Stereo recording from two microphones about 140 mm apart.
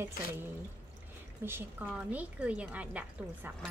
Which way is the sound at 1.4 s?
15° right (ahead or behind).